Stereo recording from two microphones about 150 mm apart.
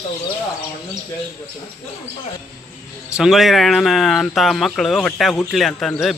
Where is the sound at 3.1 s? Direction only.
Centre (ahead or behind).